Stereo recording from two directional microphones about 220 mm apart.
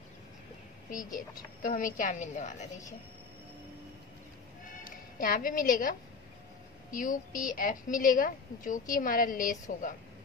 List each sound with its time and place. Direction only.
1.6 s a woman's voice: 35° left (ahead or behind)
5.2 s a woman's voice: 40° left (ahead or behind)